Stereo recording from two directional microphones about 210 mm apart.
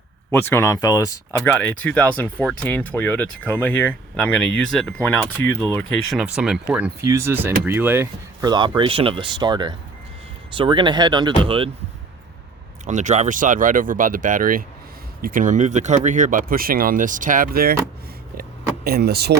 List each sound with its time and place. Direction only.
0.3 s speech: 10° left (ahead or behind)
6.1 s speech: 5° right (ahead or behind); by 11.7 s 25° right (ahead or behind)
12.8 s speech: 35° right (ahead or behind)
18.9 s speech: 50° right (ahead or behind)